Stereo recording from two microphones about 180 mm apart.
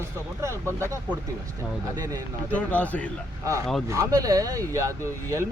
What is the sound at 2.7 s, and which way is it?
Speech, 10° left (ahead or behind).